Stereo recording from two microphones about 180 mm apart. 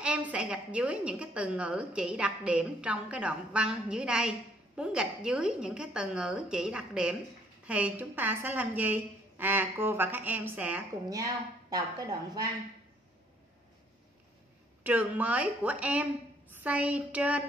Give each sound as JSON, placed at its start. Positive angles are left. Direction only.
{"t": 0.0, "sound": "a woman's voice", "side_deg": -5}
{"t": 14.8, "sound": "a woman's voice", "side_deg": -10}